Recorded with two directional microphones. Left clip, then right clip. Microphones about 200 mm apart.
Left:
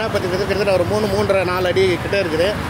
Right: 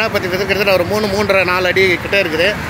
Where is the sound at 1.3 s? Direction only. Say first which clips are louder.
Right 4 dB; 5° right (ahead or behind).